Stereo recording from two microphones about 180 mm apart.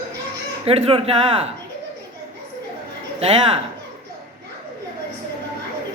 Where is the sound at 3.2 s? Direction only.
30° right (ahead or behind).